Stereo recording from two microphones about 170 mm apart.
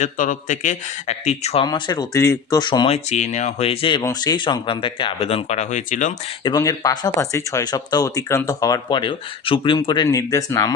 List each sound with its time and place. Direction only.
0.0 s speech: 50° left (ahead or behind)
1.6 s speech: 25° left (ahead or behind); by 6.1 s 50° left (ahead or behind)
6.4 s speech: 20° left (ahead or behind)